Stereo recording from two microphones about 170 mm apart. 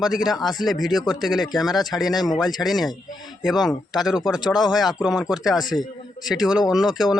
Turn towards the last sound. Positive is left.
turn(degrees=0)  # may be behind; listen again after turning